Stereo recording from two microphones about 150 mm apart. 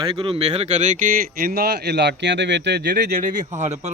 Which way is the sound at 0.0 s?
35° right (ahead or behind).